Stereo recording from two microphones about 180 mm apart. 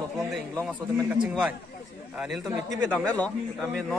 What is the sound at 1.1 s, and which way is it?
A man's voice, 5° right (ahead or behind).